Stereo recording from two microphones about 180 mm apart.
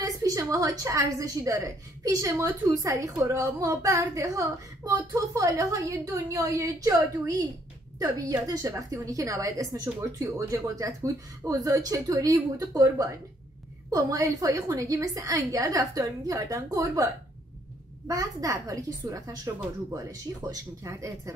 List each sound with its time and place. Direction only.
0.0 s a woman's voice: 20° right (ahead or behind)